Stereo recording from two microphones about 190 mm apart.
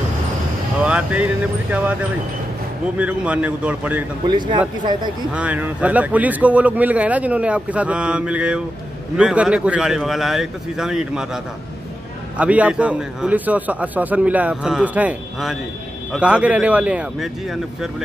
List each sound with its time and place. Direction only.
0.8 s speech: 5° right (ahead or behind)
4.3 s speech: 25° right (ahead or behind)
5.3 s a man's voice: 5° right (ahead or behind)